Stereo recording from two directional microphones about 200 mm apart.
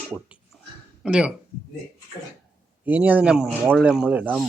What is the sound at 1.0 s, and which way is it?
Speech, 5° right (ahead or behind).